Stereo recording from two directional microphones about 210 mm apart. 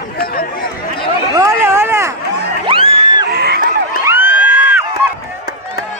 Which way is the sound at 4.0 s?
10° right (ahead or behind).